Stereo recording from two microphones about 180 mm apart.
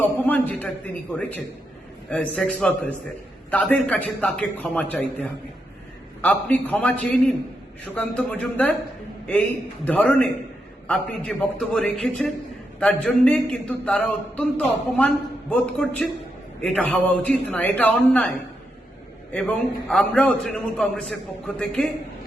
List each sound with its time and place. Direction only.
0.0 s a man's voice: 10° left (ahead or behind)
9.8 s a man's voice: 10° left (ahead or behind)